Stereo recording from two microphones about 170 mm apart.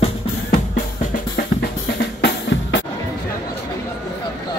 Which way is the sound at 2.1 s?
90° left.